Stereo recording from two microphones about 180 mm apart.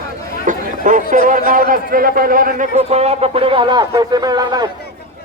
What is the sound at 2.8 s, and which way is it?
A man's voice, 35° right (ahead or behind).